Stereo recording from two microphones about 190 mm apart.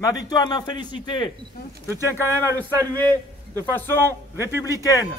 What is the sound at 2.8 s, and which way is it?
A man's voice, 10° left (ahead or behind).